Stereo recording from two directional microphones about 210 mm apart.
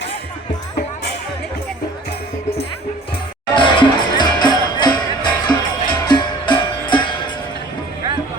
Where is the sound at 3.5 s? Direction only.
20° left (ahead or behind).